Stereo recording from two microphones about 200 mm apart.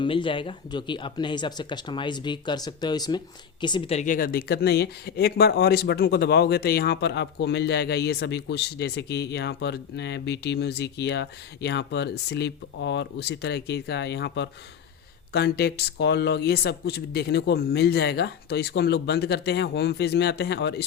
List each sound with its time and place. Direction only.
0.0 s speech: 25° left (ahead or behind); by 20.8 s 60° left (ahead or behind)